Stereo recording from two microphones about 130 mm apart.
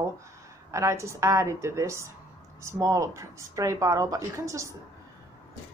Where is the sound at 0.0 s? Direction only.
20° right (ahead or behind).